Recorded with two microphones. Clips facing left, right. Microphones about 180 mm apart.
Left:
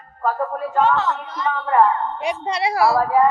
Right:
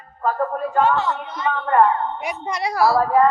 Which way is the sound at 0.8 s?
10° right (ahead or behind).